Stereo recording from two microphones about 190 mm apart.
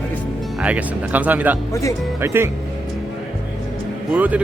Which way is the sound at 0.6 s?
5° right (ahead or behind).